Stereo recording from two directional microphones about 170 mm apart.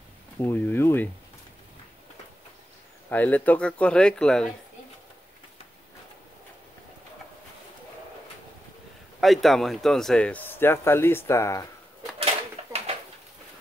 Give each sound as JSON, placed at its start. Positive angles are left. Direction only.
{"t": 0.4, "sound": "speech", "side_deg": 10}
{"t": 3.1, "sound": "speech", "side_deg": 10}
{"t": 9.2, "sound": "speech", "side_deg": 0}
{"t": 12.2, "sound": "a sound", "side_deg": -35}